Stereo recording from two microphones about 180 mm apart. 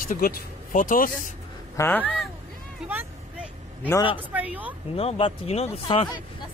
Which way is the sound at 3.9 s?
25° left (ahead or behind).